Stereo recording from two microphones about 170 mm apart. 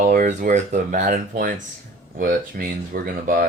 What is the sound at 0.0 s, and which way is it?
Speech, 55° right (ahead or behind).